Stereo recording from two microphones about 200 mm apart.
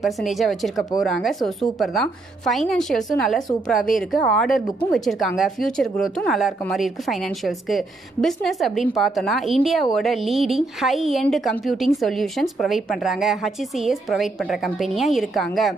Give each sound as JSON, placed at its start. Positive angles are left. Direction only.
{"t": 0.0, "sound": "a woman's voice", "side_deg": 0}